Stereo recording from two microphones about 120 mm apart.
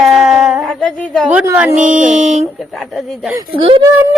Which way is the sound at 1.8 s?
90° right.